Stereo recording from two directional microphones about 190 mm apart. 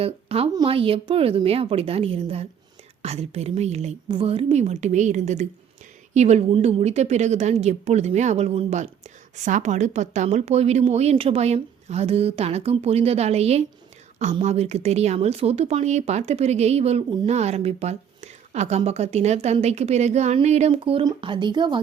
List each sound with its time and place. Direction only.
0.0 s a woman's voice: 30° right (ahead or behind)